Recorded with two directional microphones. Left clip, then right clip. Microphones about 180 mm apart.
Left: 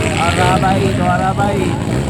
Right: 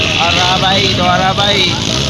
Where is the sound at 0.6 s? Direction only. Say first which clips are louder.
Right 4 dB; 5° right (ahead or behind).